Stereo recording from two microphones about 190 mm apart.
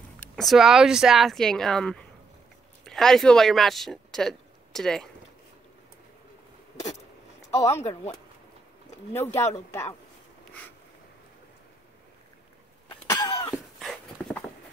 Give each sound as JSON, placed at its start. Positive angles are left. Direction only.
{"t": 0.2, "sound": "speech", "side_deg": 0}
{"t": 7.5, "sound": "speech", "side_deg": 35}
{"t": 9.1, "sound": "speech", "side_deg": 10}
{"t": 13.1, "sound": "cough", "side_deg": 20}
{"t": 13.7, "sound": "dog", "side_deg": 0}